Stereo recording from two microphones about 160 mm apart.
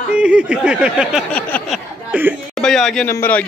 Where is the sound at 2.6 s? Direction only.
5° left (ahead or behind).